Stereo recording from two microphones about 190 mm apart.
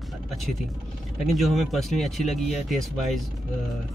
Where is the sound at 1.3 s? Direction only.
Centre (ahead or behind).